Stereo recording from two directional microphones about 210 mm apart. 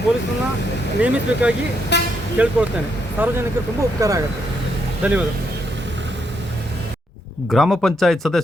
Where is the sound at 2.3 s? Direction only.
5° right (ahead or behind).